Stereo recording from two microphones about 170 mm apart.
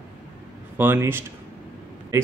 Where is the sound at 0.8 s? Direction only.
15° right (ahead or behind).